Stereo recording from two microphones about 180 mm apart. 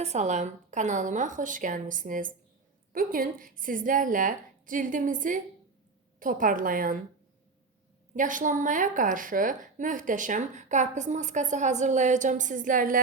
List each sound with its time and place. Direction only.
0.0 s a woman's voice: 40° right (ahead or behind)
8.1 s a woman's voice: 45° right (ahead or behind)